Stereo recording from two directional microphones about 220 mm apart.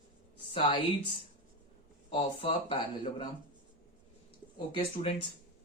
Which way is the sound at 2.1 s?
25° left (ahead or behind).